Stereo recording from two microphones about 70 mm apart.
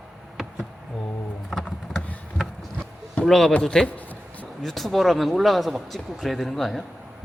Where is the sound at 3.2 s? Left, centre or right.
Centre.